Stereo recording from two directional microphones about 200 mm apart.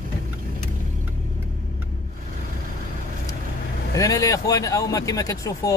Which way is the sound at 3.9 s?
15° left (ahead or behind).